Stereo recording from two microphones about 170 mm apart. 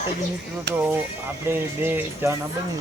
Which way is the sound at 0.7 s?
10° right (ahead or behind).